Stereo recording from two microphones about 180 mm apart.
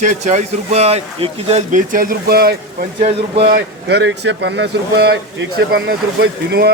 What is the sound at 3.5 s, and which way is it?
Speech, 70° right (ahead or behind).